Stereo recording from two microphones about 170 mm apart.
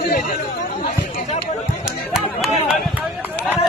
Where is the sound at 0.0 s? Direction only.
60° left (ahead or behind).